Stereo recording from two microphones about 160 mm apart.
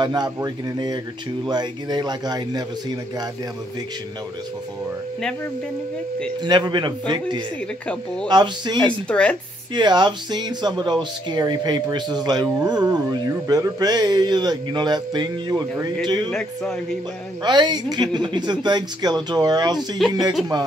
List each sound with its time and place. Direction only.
0.0 s speech: 25° right (ahead or behind)
6.4 s speech: 25° right (ahead or behind)
8.7 s speech: 10° left (ahead or behind)
9.8 s speech: 25° right (ahead or behind)
16.3 s a man's voice: 5° left (ahead or behind)
17.4 s speech: 25° right (ahead or behind)